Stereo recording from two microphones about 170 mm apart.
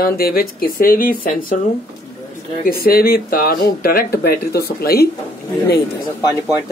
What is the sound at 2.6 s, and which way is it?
Speech, 60° left (ahead or behind).